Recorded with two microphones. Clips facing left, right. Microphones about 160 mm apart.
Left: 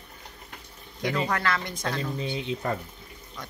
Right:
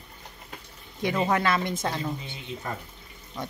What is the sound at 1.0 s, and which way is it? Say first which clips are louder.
Speech: right 2 dB; 20° right (ahead or behind).